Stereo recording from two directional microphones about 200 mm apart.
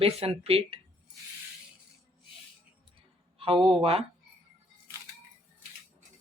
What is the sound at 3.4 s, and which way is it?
Speech, 30° right (ahead or behind).